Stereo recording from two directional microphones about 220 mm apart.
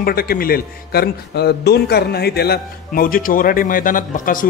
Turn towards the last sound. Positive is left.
turn(degrees=35)  # may be behind; listen again after turning